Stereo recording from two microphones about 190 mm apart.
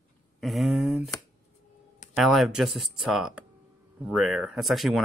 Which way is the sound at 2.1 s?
Centre (ahead or behind).